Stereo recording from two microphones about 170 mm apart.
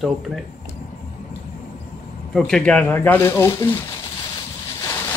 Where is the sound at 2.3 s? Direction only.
5° left (ahead or behind).